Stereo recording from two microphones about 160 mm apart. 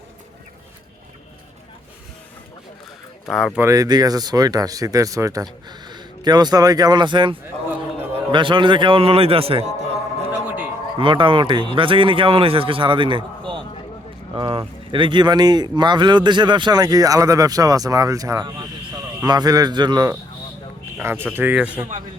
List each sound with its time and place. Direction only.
3.2 s speech: centre (ahead or behind)
3.6 s a man's voice: 20° right (ahead or behind); by 9.6 s 35° right (ahead or behind)
10.4 s a sound: 10° right (ahead or behind)
10.9 s a man's voice: 30° right (ahead or behind)
21.0 s speech: 15° right (ahead or behind)